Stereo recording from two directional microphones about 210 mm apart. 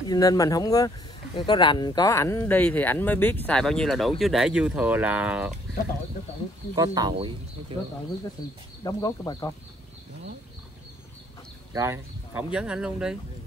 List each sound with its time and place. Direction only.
0.1 s speech: 15° left (ahead or behind); by 5.5 s 5° right (ahead or behind)
6.7 s speech: 15° right (ahead or behind)
8.8 s speech: 20° left (ahead or behind)
11.7 s speech: 10° right (ahead or behind)